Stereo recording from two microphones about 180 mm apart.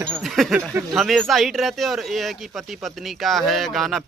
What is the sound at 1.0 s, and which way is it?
Speech, centre (ahead or behind).